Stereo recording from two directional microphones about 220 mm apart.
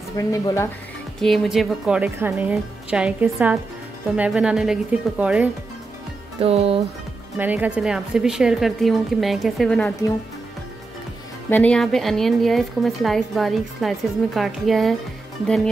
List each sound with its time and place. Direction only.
0.3 s speech: 15° left (ahead or behind)
1.2 s a woman's voice: centre (ahead or behind)
6.4 s speech: 25° right (ahead or behind)
7.3 s a woman's voice: 5° right (ahead or behind)
11.5 s a woman's voice: 5° left (ahead or behind)